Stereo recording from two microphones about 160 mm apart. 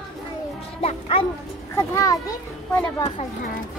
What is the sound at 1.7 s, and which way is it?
Children playing, 20° left (ahead or behind).